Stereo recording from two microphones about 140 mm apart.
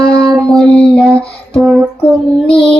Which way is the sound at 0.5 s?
5° left (ahead or behind).